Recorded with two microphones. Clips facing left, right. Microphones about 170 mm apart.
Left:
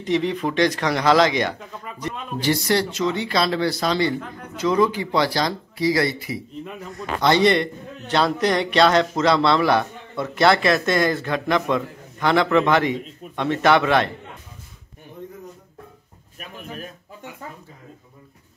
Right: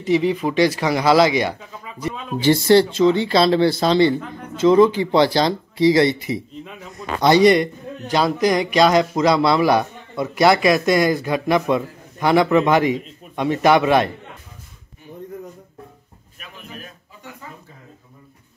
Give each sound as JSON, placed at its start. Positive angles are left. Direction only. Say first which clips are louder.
{"t": 0.0, "sound": "a man's voice", "louder": "right 4 dB", "side_deg": -5}
{"t": 2.4, "sound": "speech", "louder": "right 7 dB", "side_deg": -25}
{"t": 6.6, "sound": "a man's voice", "louder": "left 2 dB", "side_deg": 0}
{"t": 7.0, "sound": "a man's voice", "louder": "right 4 dB", "side_deg": -20}